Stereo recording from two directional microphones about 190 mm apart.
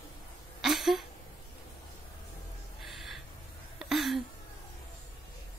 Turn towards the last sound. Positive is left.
turn(degrees=0)  # may be behind; listen again after turning